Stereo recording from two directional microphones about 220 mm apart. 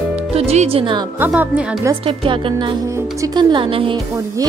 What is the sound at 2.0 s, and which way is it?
Speech, 25° right (ahead or behind).